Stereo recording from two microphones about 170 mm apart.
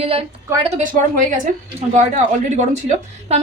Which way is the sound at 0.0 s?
35° right (ahead or behind).